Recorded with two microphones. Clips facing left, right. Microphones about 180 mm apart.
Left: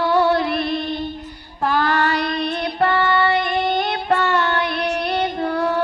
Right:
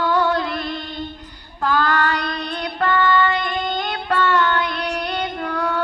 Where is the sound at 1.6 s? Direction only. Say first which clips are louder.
Left 1 dB; 25° left (ahead or behind).